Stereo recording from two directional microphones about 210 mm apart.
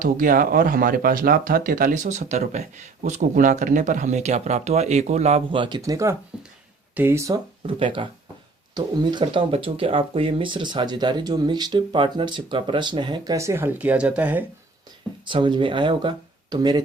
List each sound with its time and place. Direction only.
0.0 s speech: 40° right (ahead or behind); by 14.4 s 10° right (ahead or behind)
15.2 s speech: 25° right (ahead or behind)